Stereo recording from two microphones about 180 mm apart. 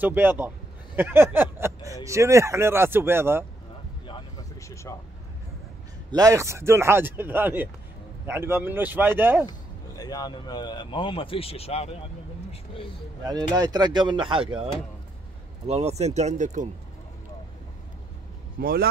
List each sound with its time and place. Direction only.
0.0 s speech: 10° right (ahead or behind)
4.1 s vehicle: 15° left (ahead or behind)
6.1 s speech: 20° right (ahead or behind)
9.5 s speech: 20° left (ahead or behind)
13.2 s speech: 20° right (ahead or behind); by 16.6 s 40° right (ahead or behind)
18.6 s a man's voice: 55° right (ahead or behind)